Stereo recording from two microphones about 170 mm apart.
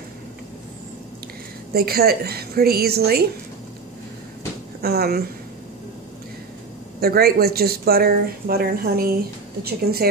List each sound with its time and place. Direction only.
1.7 s speech: 65° right (ahead or behind)
4.8 s a woman's voice: 65° right (ahead or behind)
7.0 s speech: 65° right (ahead or behind)